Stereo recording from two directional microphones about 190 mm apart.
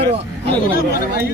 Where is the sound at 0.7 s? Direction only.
50° left (ahead or behind).